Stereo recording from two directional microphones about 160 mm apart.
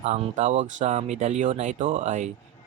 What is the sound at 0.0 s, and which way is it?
Speech, 40° right (ahead or behind).